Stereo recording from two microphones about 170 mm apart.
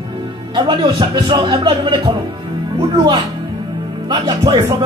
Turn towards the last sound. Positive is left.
turn(degrees=-20)  # may be behind; listen again after turning